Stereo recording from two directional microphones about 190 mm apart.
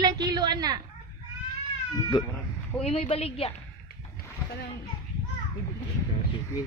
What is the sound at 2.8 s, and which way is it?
Speech, 30° left (ahead or behind).